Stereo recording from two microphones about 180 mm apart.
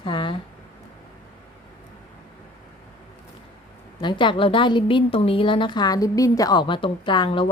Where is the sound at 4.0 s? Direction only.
25° left (ahead or behind).